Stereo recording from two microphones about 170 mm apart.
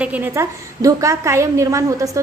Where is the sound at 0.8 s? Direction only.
20° right (ahead or behind).